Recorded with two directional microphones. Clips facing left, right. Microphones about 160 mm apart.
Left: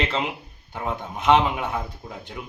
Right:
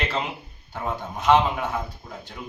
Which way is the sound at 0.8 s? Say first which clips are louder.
Even; 15° left (ahead or behind).